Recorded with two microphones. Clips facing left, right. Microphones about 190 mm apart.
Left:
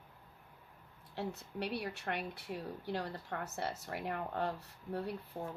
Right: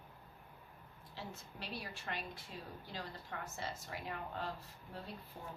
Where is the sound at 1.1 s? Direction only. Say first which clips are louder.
Left 9 dB; 65° left (ahead or behind).